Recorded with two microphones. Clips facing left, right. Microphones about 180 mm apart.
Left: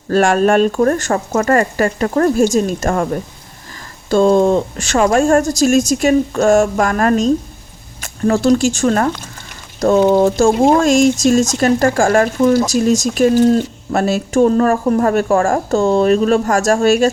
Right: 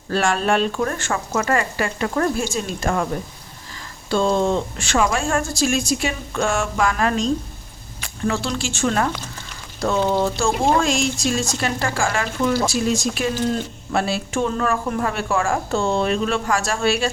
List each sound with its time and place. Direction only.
0.1 s speech: 45° left (ahead or behind)
4.1 s speech: 45° left (ahead or behind)